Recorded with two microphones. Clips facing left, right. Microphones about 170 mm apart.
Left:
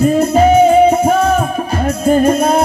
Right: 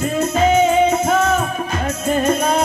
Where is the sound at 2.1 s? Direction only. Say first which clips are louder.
Left 7 dB; 10° left (ahead or behind).